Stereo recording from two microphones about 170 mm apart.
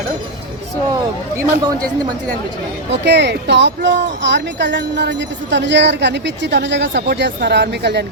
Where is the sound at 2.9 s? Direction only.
90° right.